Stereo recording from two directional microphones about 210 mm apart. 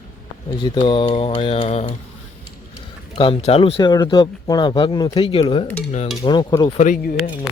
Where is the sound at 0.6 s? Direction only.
20° left (ahead or behind).